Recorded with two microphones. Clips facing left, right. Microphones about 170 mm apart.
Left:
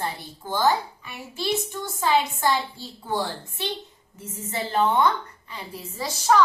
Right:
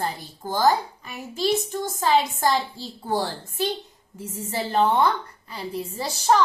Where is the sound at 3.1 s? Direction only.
40° right (ahead or behind).